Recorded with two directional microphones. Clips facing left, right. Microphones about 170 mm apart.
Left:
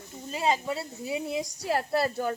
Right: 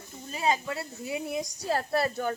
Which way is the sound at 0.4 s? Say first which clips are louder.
Left 1 dB; 25° left (ahead or behind).